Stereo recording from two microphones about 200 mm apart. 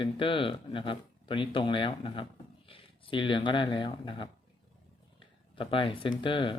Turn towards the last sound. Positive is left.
turn(degrees=25)  # may be behind; listen again after turning